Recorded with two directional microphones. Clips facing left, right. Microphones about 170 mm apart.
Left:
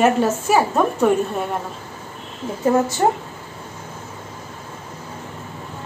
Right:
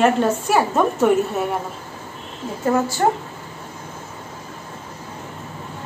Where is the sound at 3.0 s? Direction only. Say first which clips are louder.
Even; 20° left (ahead or behind).